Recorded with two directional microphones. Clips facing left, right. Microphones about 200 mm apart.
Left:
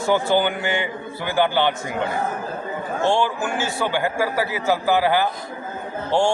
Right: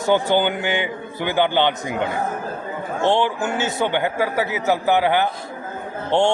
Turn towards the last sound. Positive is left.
turn(degrees=-20)  # may be behind; listen again after turning